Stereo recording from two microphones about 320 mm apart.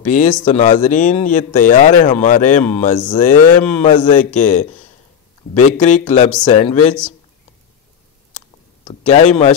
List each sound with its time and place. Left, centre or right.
0.1 s speech: left
5.7 s speech: left
8.8 s speech: left